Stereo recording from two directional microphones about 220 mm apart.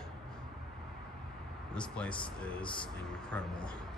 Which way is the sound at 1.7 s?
5° left (ahead or behind).